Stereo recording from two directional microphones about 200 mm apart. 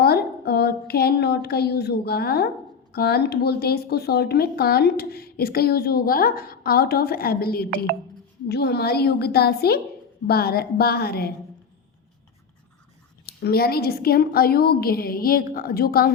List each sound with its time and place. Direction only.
0.0 s speech: 50° left (ahead or behind)
13.2 s speech: 50° left (ahead or behind)